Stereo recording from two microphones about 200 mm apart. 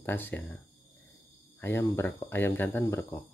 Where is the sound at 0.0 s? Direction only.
10° left (ahead or behind).